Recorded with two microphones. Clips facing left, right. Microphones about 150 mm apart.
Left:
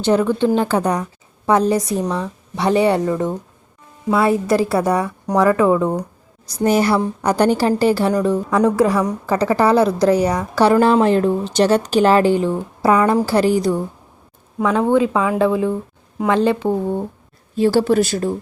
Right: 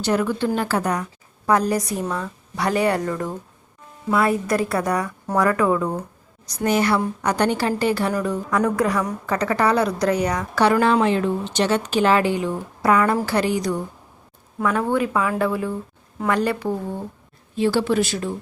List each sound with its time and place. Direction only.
0.0 s a woman's voice: 25° left (ahead or behind)
5.0 s a woman's voice: 15° left (ahead or behind); by 13.7 s 35° left (ahead or behind)
14.6 s a woman's voice: 20° left (ahead or behind)
16.6 s speech: 45° left (ahead or behind)